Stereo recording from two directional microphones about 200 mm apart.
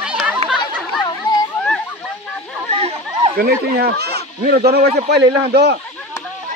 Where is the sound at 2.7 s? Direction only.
30° right (ahead or behind).